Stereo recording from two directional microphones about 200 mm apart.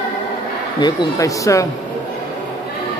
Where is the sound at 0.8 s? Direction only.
15° left (ahead or behind).